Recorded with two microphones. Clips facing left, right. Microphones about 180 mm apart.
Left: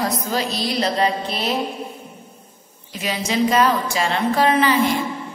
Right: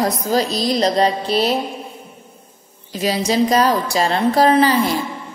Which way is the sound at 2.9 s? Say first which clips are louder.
Right 5 dB; 35° right (ahead or behind).